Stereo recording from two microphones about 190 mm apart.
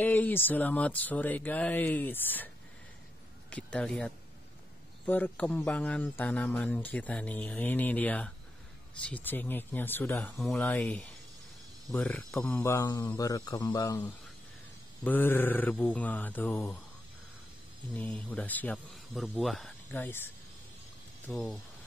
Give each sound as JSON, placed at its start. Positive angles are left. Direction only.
{"t": 0.0, "sound": "speech", "side_deg": 10}
{"t": 12.6, "sound": "speech", "side_deg": 20}
{"t": 17.9, "sound": "speech", "side_deg": 10}
{"t": 21.3, "sound": "speech", "side_deg": 5}